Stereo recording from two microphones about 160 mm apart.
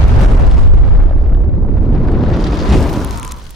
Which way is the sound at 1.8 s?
Centre (ahead or behind).